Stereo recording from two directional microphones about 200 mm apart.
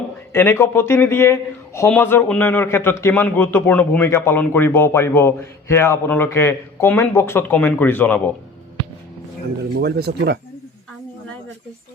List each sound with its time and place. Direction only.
0.3 s speech: 10° left (ahead or behind)
9.8 s speech: 55° right (ahead or behind)